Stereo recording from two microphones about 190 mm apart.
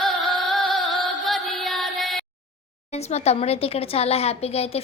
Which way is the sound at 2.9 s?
35° left (ahead or behind).